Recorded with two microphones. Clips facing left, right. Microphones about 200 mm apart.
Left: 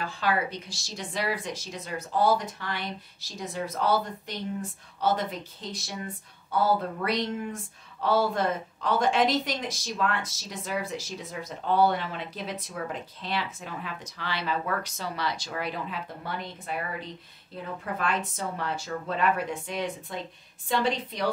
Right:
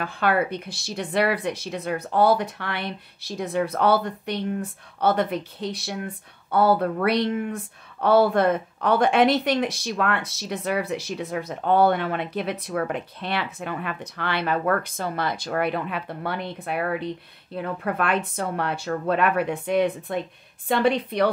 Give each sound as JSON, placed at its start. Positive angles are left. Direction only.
{"t": 0.0, "sound": "a woman's voice", "side_deg": -60}